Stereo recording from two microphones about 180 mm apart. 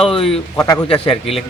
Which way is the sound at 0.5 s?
20° left (ahead or behind).